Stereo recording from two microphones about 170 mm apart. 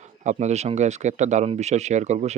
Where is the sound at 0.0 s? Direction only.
45° right (ahead or behind).